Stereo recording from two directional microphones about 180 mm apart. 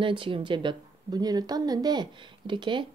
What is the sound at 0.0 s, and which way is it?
A woman's voice, 30° right (ahead or behind).